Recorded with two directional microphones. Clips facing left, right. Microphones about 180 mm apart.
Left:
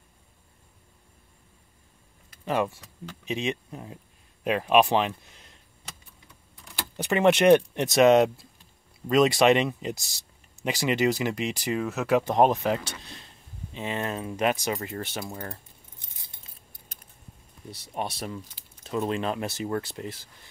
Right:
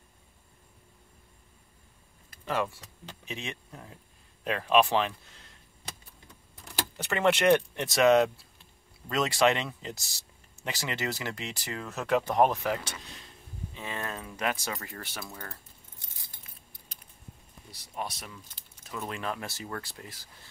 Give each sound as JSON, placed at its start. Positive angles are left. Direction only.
{"t": 2.4, "sound": "speech", "side_deg": 15}
{"t": 7.0, "sound": "speech", "side_deg": 15}
{"t": 11.9, "sound": "speech", "side_deg": 5}
{"t": 12.2, "sound": "speech", "side_deg": 20}
{"t": 13.7, "sound": "speech", "side_deg": 20}
{"t": 15.2, "sound": "speech", "side_deg": 35}
{"t": 16.2, "sound": "keys jangling", "side_deg": 25}
{"t": 16.9, "sound": "a sound", "side_deg": 50}
{"t": 17.6, "sound": "speech", "side_deg": 25}